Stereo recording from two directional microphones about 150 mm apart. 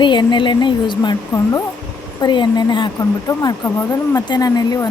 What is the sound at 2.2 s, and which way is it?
Speech, 30° left (ahead or behind).